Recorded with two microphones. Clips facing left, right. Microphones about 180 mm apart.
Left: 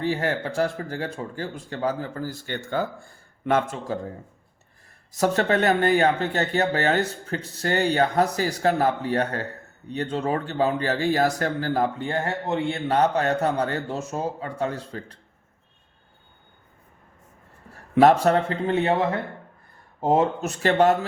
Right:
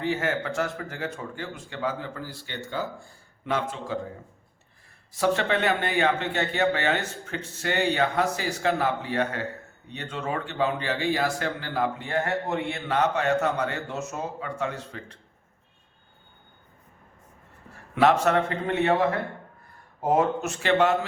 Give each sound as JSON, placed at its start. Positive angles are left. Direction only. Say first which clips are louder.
{"t": 0.0, "sound": "speech", "louder": "left 2 dB", "side_deg": 35}
{"t": 5.1, "sound": "speech", "louder": "left 3 dB", "side_deg": 40}
{"t": 17.9, "sound": "speech", "louder": "left 4 dB", "side_deg": 35}